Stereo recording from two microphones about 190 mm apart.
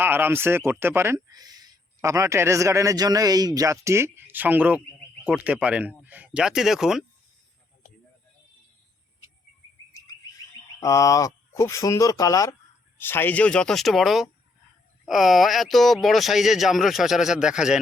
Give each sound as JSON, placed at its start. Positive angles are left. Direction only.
{"t": 0.0, "sound": "speech", "side_deg": -10}
{"t": 10.8, "sound": "speech", "side_deg": 15}